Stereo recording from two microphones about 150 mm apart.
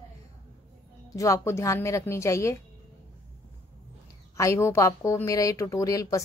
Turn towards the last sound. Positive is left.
turn(degrees=20)  # may be behind; listen again after turning